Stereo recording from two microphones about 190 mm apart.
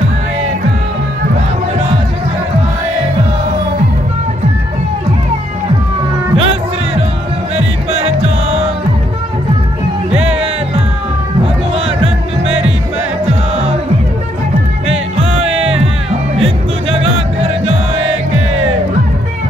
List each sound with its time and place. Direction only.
6.3 s music: 30° right (ahead or behind)
10.1 s music: 30° right (ahead or behind)
14.9 s music: 30° right (ahead or behind)